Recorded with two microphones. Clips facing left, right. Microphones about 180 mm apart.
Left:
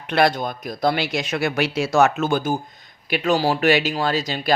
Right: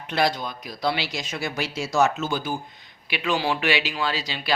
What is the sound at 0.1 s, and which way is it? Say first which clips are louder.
Speech: left 5 dB; 60° left (ahead or behind).